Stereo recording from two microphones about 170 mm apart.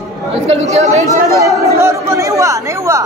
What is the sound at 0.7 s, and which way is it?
Speech, 40° right (ahead or behind).